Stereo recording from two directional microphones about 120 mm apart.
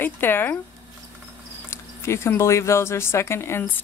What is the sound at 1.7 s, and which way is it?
Speech, 20° left (ahead or behind).